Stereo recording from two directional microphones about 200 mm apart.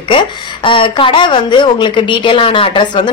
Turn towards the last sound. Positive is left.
turn(degrees=25)  # may be behind; listen again after turning